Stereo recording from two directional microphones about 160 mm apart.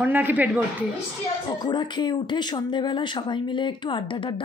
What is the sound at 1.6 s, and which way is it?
Speech, 30° left (ahead or behind).